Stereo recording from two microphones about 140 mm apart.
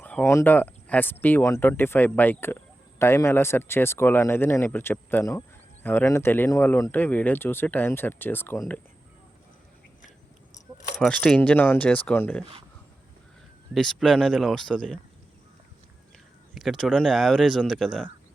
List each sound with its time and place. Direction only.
0.0 s a sound: 10° left (ahead or behind)
0.3 s speech: 15° left (ahead or behind)
11.0 s speech: 5° left (ahead or behind)
13.7 s speech: centre (ahead or behind)
16.6 s speech: centre (ahead or behind)